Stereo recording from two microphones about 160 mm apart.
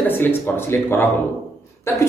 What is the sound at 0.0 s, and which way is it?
A man's voice, 10° left (ahead or behind).